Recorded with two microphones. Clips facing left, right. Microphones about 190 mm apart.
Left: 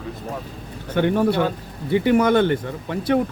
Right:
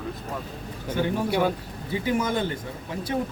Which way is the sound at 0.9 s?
65° left (ahead or behind).